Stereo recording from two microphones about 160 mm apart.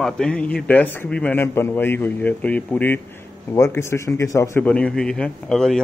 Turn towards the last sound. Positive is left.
turn(degrees=5)  # may be behind; listen again after turning